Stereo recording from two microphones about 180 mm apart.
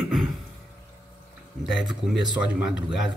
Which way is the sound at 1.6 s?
Centre (ahead or behind).